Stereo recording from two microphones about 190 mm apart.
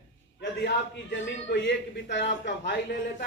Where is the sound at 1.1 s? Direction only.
70° left (ahead or behind).